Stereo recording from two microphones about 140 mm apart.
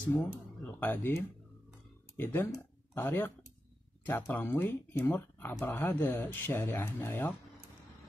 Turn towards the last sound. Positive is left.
turn(degrees=15)  # may be behind; listen again after turning